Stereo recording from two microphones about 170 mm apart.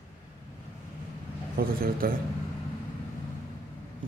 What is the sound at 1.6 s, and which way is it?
Speech, 60° right (ahead or behind).